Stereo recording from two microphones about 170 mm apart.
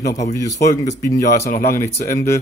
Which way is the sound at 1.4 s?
60° left (ahead or behind).